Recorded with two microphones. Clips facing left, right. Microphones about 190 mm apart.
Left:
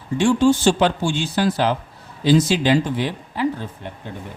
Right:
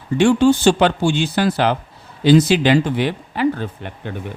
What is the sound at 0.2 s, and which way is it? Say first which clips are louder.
Speech: right 3 dB; 65° right (ahead or behind).